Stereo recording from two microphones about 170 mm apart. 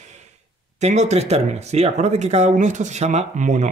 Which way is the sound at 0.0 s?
45° right (ahead or behind).